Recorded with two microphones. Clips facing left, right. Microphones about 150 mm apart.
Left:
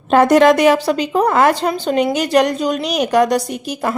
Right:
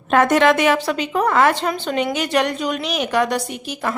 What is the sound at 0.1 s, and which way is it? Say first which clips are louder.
A woman's voice: left 4 dB; 35° left (ahead or behind).